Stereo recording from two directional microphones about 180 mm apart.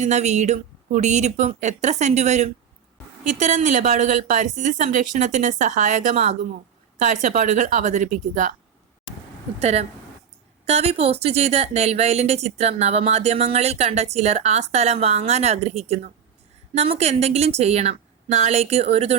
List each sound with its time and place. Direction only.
0.0 s a woman's voice: 40° right (ahead or behind)
9.6 s a woman's voice: 40° right (ahead or behind)